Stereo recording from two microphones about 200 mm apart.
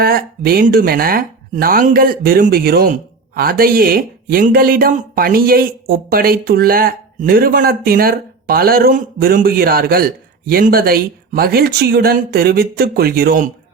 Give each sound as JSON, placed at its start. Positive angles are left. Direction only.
{"t": 0.0, "sound": "speech", "side_deg": -50}